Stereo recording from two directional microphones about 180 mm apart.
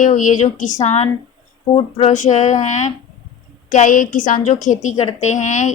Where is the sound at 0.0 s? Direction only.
45° left (ahead or behind).